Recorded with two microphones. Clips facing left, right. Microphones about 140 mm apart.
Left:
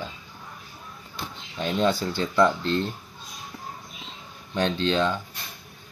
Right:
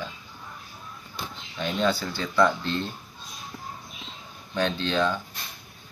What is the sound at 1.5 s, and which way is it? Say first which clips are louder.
Speech: left 2 dB; 30° left (ahead or behind).